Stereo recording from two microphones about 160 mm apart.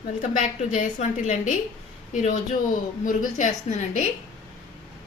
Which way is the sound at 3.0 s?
55° left (ahead or behind).